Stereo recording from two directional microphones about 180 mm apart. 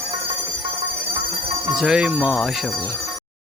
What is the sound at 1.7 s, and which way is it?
A man's voice, 5° right (ahead or behind).